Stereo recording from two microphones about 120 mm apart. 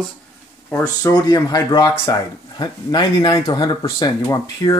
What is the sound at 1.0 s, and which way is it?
Speech, 30° left (ahead or behind).